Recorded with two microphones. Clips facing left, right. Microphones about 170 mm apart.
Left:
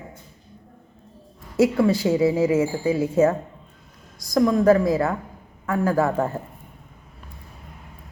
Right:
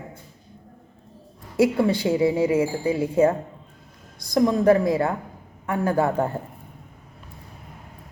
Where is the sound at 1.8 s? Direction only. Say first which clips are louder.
Left 1 dB; 25° right (ahead or behind).